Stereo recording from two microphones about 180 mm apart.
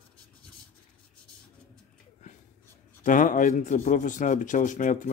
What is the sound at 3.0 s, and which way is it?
Speech, 50° left (ahead or behind).